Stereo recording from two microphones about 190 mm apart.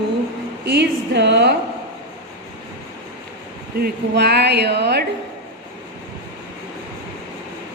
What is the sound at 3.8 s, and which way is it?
Speech, 60° right (ahead or behind).